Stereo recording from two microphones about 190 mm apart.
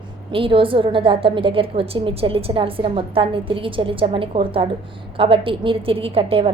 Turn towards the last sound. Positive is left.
turn(degrees=-30)  # may be behind; listen again after turning